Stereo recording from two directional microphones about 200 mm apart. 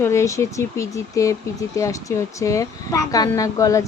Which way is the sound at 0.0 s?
15° left (ahead or behind).